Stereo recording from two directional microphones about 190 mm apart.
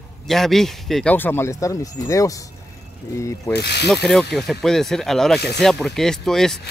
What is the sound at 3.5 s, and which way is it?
Speech, 60° left (ahead or behind).